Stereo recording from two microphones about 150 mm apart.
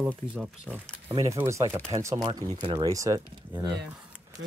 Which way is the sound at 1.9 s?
30° right (ahead or behind).